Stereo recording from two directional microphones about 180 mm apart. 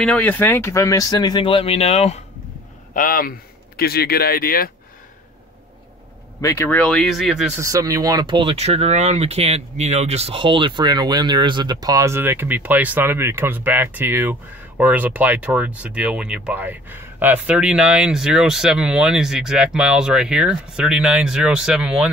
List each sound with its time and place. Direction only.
0.0 s speech: 5° left (ahead or behind); by 2.2 s 35° left (ahead or behind)
2.9 s a man's voice: 50° left (ahead or behind)
6.4 s speech: 10° left (ahead or behind)
7.6 s speech: 20° right (ahead or behind)